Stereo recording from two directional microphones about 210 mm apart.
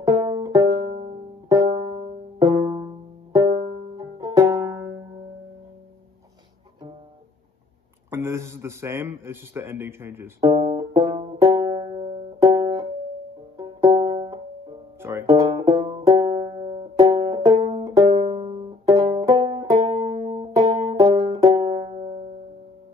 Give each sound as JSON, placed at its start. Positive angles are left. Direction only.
{"t": 0.0, "sound": "music", "side_deg": -20}
{"t": 0.8, "sound": "music", "side_deg": -30}
{"t": 2.4, "sound": "music", "side_deg": -15}
{"t": 3.9, "sound": "music", "side_deg": -15}
{"t": 8.1, "sound": "a sound", "side_deg": -15}
{"t": 13.6, "sound": "music", "side_deg": -20}
{"t": 15.0, "sound": "banjo", "side_deg": -10}